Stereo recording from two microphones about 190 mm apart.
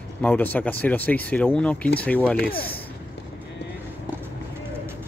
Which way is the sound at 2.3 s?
50° left (ahead or behind).